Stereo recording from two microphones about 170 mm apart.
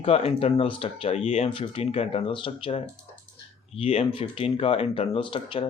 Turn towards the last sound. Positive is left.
turn(degrees=30)  # may be behind; listen again after turning